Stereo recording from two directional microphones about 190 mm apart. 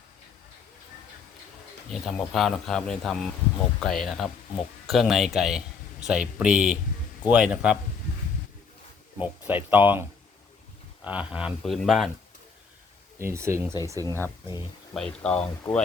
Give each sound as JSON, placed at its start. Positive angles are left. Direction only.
{"t": 1.9, "sound": "speech", "side_deg": 0}
{"t": 9.1, "sound": "speech", "side_deg": -10}
{"t": 11.0, "sound": "speech", "side_deg": -5}
{"t": 13.1, "sound": "speech", "side_deg": -15}
{"t": 14.0, "sound": "speech", "side_deg": 15}
{"t": 14.9, "sound": "speech", "side_deg": 5}